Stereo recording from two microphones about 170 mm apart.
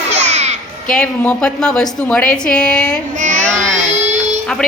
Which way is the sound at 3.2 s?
45° right (ahead or behind).